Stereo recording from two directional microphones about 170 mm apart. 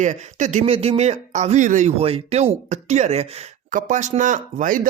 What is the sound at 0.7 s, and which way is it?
Speech, 35° right (ahead or behind).